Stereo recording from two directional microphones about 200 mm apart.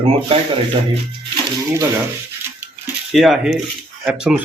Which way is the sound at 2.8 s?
Centre (ahead or behind).